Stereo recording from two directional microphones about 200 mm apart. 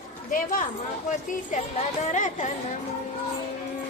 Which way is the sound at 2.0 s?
40° left (ahead or behind).